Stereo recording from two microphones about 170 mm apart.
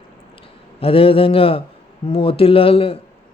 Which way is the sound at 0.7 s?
35° left (ahead or behind).